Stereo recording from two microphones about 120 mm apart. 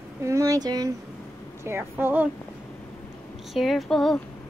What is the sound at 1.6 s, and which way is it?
Speech, 20° right (ahead or behind).